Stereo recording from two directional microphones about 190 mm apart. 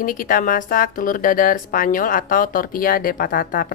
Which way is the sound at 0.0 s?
45° left (ahead or behind).